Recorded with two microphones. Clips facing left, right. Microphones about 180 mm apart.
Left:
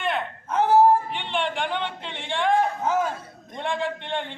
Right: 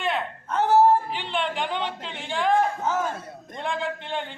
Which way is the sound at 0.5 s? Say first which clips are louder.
Left 1 dB; 15° left (ahead or behind).